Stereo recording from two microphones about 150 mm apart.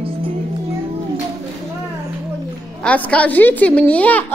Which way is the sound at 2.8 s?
10° left (ahead or behind).